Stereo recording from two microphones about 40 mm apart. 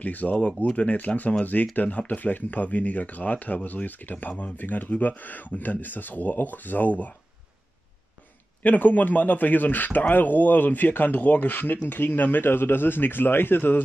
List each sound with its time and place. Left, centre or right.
0.0 s speech: left
0.4 s speech: left
8.6 s speech: left